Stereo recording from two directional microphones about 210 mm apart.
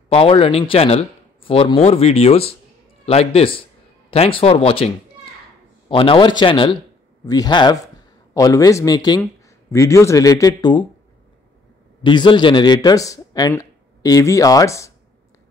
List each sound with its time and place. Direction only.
0.1 s a man's voice: 25° left (ahead or behind)
12.0 s a man's voice: 20° left (ahead or behind)